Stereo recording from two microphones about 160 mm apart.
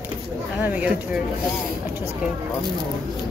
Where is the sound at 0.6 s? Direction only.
10° right (ahead or behind).